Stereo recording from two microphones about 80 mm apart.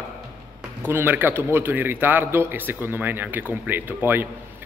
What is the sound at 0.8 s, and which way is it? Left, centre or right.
A man's voice, right.